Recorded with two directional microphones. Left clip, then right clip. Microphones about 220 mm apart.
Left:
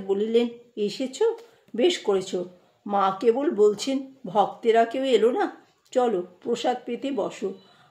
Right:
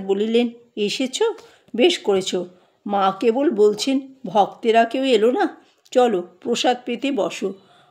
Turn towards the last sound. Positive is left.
turn(degrees=-40)  # may be behind; listen again after turning